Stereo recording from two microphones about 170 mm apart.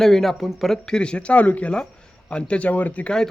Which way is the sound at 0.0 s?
Centre (ahead or behind).